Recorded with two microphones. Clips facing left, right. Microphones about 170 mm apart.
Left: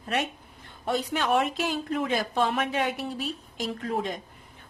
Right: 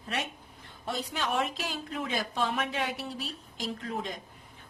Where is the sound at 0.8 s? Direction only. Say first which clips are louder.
Left 6 dB; 60° left (ahead or behind).